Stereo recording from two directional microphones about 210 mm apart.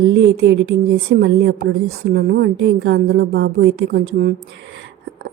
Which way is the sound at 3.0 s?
60° right (ahead or behind).